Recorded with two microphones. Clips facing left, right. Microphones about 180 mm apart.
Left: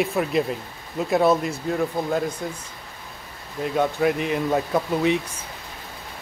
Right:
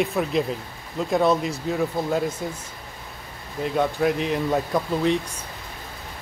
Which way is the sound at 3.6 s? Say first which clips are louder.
Left 1 dB; centre (ahead or behind).